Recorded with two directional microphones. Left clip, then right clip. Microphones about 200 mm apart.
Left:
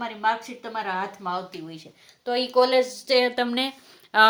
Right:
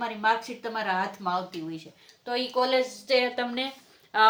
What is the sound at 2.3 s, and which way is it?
A woman's voice, 45° left (ahead or behind).